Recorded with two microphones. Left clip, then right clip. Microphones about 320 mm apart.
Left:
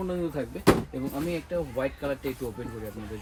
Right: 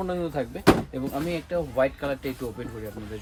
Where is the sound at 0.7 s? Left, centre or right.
Centre.